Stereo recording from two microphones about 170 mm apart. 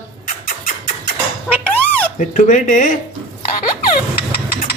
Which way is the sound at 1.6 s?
10° left (ahead or behind).